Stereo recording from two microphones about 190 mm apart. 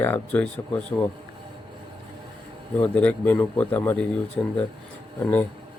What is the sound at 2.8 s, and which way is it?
Speech, 5° left (ahead or behind).